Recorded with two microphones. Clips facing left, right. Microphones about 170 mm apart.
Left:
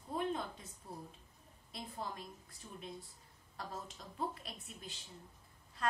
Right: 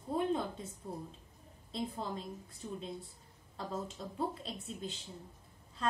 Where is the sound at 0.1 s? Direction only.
30° right (ahead or behind).